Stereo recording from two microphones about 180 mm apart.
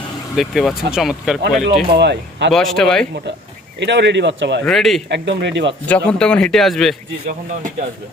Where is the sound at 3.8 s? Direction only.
75° right (ahead or behind).